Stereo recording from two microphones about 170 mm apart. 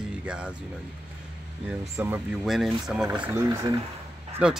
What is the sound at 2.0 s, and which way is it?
A man's voice, 10° right (ahead or behind).